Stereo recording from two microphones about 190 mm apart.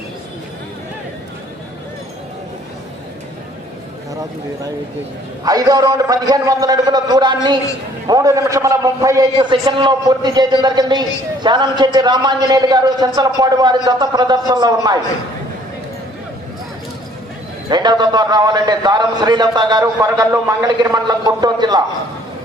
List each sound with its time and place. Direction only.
5.5 s a man's voice: 20° right (ahead or behind)
17.7 s a man's voice: 20° right (ahead or behind)